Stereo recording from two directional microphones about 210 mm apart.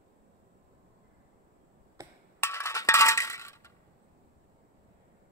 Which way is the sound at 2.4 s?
10° left (ahead or behind).